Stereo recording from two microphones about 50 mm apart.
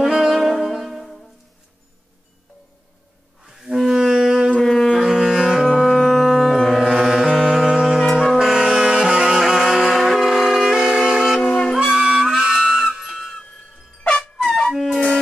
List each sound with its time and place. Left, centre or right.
0.0 s music: centre
3.4 s music: centre
4.5 s music: centre
5.0 s music: centre
6.8 s music: centre
7.6 s saxophone: centre
8.1 s brass instrument: centre
11.7 s music: centre
12.5 s music: centre
14.7 s music: centre